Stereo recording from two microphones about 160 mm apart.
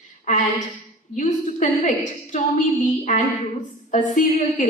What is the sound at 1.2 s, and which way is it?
A woman's voice, 55° left (ahead or behind).